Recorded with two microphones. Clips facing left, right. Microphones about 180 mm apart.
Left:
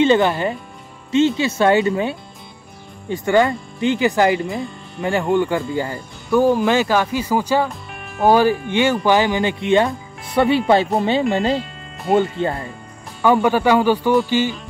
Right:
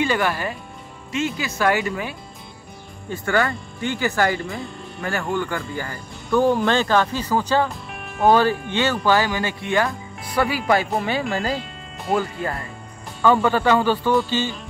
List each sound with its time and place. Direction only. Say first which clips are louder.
0.0 s speech: left 7 dB; 25° left (ahead or behind)
6.3 s speech: left 3 dB; 5° left (ahead or behind)
7.9 s music: left 1 dB; centre (ahead or behind)
8.3 s speech: left 2 dB; 10° left (ahead or behind)
11.5 s music: left 5 dB; centre (ahead or behind)
12.2 s speech: left 6 dB; 25° left (ahead or behind)
13.2 s speech: left 2 dB; 15° left (ahead or behind)